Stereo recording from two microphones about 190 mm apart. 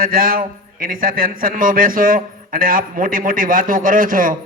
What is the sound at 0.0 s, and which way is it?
A man's voice, 50° right (ahead or behind).